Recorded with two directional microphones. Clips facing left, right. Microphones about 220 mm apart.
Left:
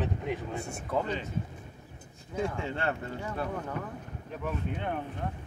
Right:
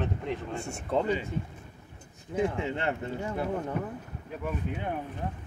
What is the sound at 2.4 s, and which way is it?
Speech, 20° right (ahead or behind).